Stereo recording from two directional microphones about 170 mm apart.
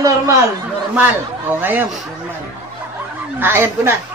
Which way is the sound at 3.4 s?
15° right (ahead or behind).